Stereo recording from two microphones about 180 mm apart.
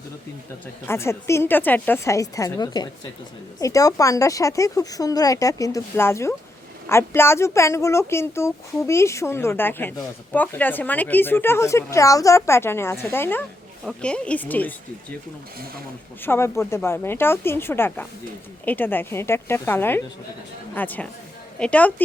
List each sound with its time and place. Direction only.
0.9 s speech: 15° left (ahead or behind)
16.2 s speech: 15° left (ahead or behind)